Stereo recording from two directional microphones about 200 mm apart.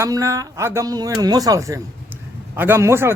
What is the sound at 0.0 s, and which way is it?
A man's voice, 15° right (ahead or behind).